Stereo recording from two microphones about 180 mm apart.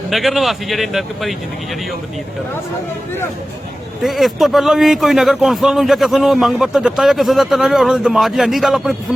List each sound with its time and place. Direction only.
0.1 s a man's voice: centre (ahead or behind)
4.0 s a man's voice: centre (ahead or behind)